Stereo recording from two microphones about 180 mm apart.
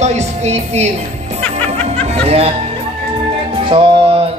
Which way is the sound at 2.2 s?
35° right (ahead or behind).